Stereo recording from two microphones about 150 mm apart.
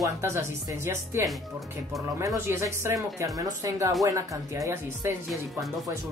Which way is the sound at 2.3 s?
20° right (ahead or behind).